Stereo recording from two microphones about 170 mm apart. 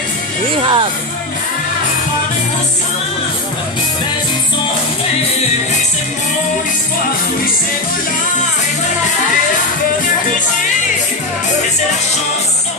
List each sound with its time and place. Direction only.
0.6 s speech: 30° right (ahead or behind)